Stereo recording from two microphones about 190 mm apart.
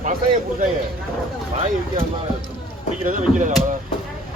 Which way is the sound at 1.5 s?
40° right (ahead or behind).